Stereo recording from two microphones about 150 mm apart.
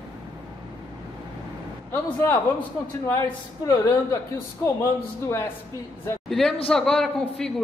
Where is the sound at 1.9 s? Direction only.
15° left (ahead or behind).